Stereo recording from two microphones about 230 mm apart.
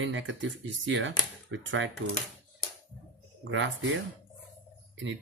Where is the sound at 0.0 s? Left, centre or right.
Right.